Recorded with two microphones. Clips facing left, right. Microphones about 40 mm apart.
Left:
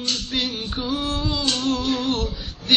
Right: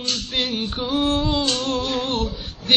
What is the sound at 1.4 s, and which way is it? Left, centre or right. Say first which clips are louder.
Music: even; centre.